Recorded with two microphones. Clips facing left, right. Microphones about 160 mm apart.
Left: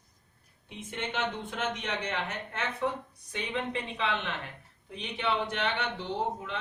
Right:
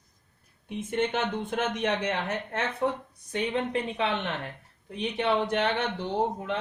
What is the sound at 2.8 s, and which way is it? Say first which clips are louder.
Speech: right 4 dB; 35° right (ahead or behind).